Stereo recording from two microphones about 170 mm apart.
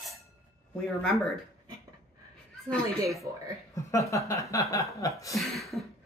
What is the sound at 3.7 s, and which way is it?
Speech, 20° left (ahead or behind).